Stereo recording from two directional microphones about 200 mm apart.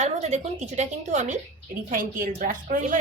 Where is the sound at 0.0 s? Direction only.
35° right (ahead or behind).